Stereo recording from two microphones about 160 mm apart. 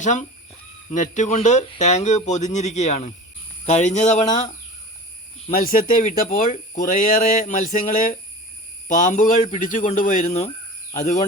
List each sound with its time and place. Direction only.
0.0 s speech: 50° left (ahead or behind)
5.5 s speech: 60° left (ahead or behind)